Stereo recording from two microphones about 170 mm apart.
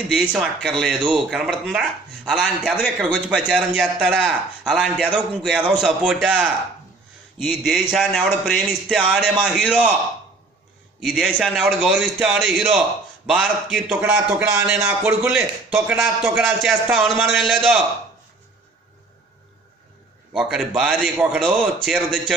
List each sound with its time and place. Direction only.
0.1 s speech: 5° right (ahead or behind)
11.0 s speech: 5° right (ahead or behind)
14.1 s speech: 15° right (ahead or behind); by 17.8 s centre (ahead or behind)
20.3 s speech: 5° right (ahead or behind)